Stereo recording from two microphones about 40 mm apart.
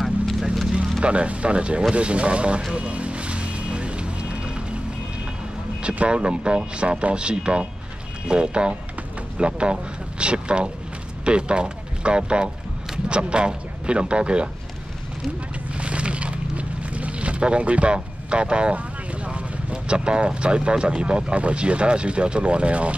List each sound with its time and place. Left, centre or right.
0.0 s clip-clop: centre
1.0 s speech: right
2.7 s music: right
5.8 s speech: right
15.7 s a sound: right
19.7 s speech: right